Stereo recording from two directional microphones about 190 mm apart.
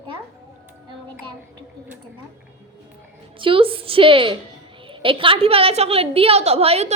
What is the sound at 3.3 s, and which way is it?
A woman's voice, 25° right (ahead or behind).